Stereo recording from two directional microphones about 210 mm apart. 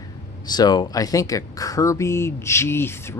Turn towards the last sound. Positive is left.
turn(degrees=10)  # may be behind; listen again after turning